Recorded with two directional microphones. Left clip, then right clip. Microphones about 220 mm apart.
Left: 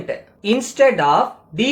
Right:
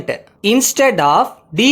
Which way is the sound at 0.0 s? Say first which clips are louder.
Right 6 dB; 50° right (ahead or behind).